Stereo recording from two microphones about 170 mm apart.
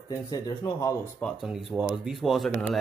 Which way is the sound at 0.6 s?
20° left (ahead or behind).